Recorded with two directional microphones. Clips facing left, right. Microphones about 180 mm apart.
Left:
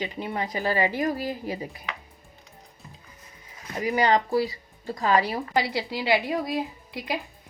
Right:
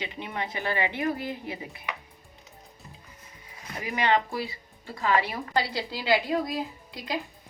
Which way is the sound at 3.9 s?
35° left (ahead or behind).